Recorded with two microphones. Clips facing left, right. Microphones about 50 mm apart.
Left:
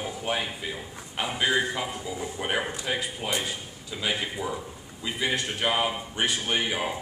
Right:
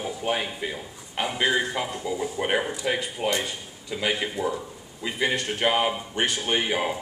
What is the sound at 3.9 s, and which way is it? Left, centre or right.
Speech, right.